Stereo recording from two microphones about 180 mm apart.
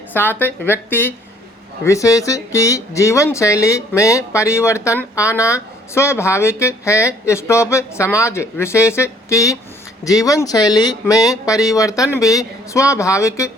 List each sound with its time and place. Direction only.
0.1 s speech: 10° left (ahead or behind)